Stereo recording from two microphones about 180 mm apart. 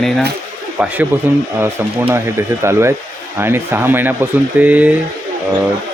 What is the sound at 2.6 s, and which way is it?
Speech, 15° right (ahead or behind).